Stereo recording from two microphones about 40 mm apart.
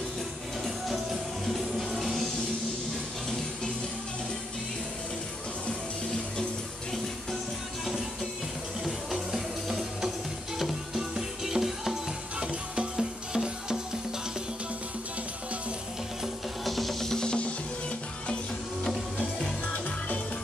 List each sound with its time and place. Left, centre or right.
1.5 s music: centre
8.8 s music: centre
16.6 s music: centre
17.2 s music: left